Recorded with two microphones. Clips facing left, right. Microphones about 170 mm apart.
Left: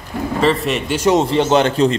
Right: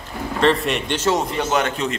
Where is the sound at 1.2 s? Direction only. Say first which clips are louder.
Left 7 dB; 30° left (ahead or behind).